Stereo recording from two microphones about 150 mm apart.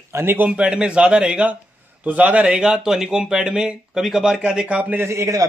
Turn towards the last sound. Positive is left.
turn(degrees=-20)  # may be behind; listen again after turning